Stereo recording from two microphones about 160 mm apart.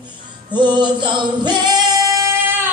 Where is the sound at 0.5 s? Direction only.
30° right (ahead or behind).